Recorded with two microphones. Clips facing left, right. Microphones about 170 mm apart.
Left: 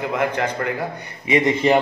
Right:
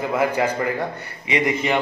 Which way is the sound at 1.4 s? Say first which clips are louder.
Left 5 dB; 35° left (ahead or behind).